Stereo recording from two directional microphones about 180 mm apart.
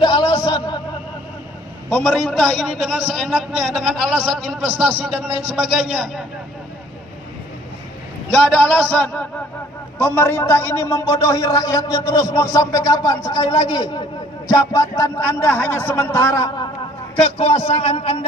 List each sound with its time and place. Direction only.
0.0 s music: 25° left (ahead or behind)
1.9 s a man's voice: 5° left (ahead or behind)
8.3 s a man's voice: 5° left (ahead or behind)
17.2 s a man's voice: 30° left (ahead or behind)